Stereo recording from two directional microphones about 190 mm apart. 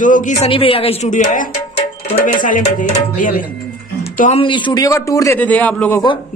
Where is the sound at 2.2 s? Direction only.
45° left (ahead or behind).